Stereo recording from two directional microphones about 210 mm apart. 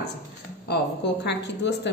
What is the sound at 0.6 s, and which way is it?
A woman's voice, 50° left (ahead or behind).